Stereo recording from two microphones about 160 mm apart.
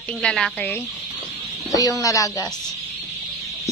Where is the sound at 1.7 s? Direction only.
20° left (ahead or behind).